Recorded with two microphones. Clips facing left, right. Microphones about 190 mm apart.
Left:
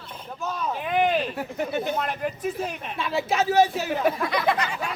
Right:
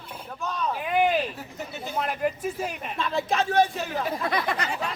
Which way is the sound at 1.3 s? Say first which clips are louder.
Left 9 dB; 65° left (ahead or behind).